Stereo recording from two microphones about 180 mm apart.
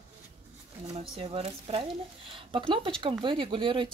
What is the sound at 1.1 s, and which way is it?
Speech, 35° right (ahead or behind).